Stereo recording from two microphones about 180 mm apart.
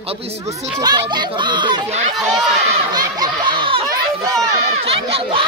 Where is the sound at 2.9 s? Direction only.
20° right (ahead or behind).